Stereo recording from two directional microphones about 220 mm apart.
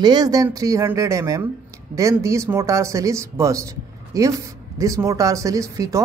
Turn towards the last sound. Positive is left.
turn(degrees=-15)  # may be behind; listen again after turning